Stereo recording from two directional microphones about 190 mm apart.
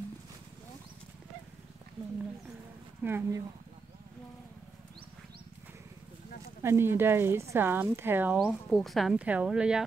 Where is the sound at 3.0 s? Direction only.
10° right (ahead or behind).